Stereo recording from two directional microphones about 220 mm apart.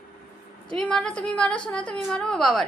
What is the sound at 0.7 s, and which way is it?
A woman's voice, 5° left (ahead or behind).